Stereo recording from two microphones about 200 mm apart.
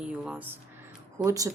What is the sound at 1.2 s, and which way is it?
Speech, 15° right (ahead or behind).